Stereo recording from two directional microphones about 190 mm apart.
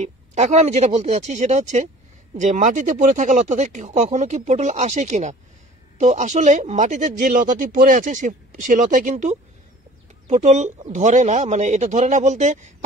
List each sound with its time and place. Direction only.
0.0 s speech: 35° right (ahead or behind)